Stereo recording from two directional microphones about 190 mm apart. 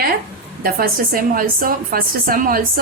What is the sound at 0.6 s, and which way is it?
A woman's voice, 50° right (ahead or behind).